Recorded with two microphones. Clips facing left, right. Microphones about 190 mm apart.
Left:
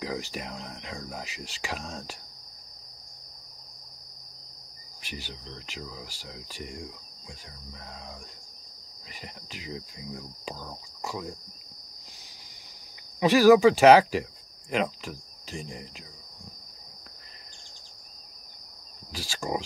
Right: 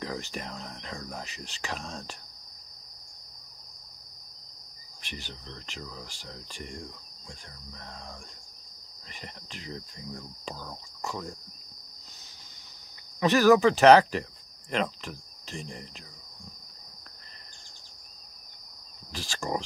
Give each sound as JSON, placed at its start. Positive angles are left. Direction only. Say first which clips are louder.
{"t": 0.0, "sound": "speech", "louder": "left 2 dB", "side_deg": 10}
{"t": 5.0, "sound": "speech", "louder": "left 2 dB", "side_deg": 5}
{"t": 9.2, "sound": "speech", "louder": "left 1 dB", "side_deg": 5}
{"t": 13.2, "sound": "speech", "louder": "left 3 dB", "side_deg": 10}
{"t": 14.7, "sound": "cricket", "louder": "left 2 dB", "side_deg": 5}
{"t": 19.1, "sound": "speech", "louder": "left 1 dB", "side_deg": 10}